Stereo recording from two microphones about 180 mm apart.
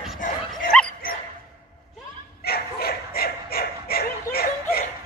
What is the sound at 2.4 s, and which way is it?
Bow-wow, 60° left (ahead or behind).